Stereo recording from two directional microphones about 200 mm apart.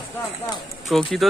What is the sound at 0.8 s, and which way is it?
Speech, centre (ahead or behind).